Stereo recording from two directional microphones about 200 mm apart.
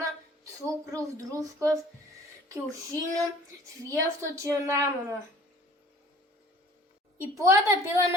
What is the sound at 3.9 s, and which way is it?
A woman's voice, 15° right (ahead or behind).